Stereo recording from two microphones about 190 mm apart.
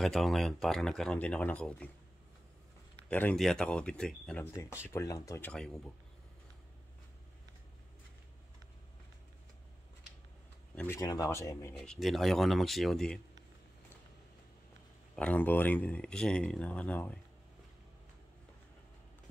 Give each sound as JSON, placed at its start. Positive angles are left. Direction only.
{"t": 0.0, "sound": "speech", "side_deg": 0}
{"t": 3.1, "sound": "speech", "side_deg": 5}
{"t": 4.8, "sound": "speech", "side_deg": 15}
{"t": 10.7, "sound": "a sound", "side_deg": 10}
{"t": 11.0, "sound": "speech", "side_deg": 20}
{"t": 11.8, "sound": "speech", "side_deg": 0}
{"t": 15.1, "sound": "speech", "side_deg": 10}